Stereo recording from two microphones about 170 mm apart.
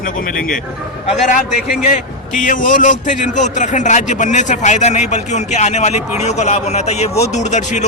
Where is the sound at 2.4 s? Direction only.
50° left (ahead or behind).